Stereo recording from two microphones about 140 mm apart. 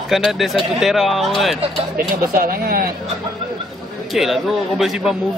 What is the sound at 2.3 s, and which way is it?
Speech, 90° right.